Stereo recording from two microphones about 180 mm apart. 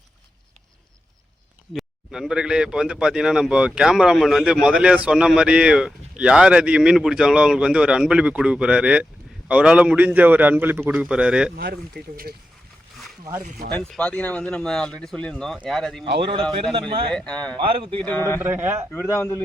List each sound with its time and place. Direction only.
1.7 s a man's voice: 5° right (ahead or behind)
11.5 s speech: 60° right (ahead or behind)
13.7 s a man's voice: 5° left (ahead or behind)
17.1 s a man's voice: 5° left (ahead or behind)
17.6 s speech: 30° right (ahead or behind)
18.0 s speech: 10° left (ahead or behind)
18.3 s a man's voice: 10° right (ahead or behind)
19.0 s speech: 15° left (ahead or behind)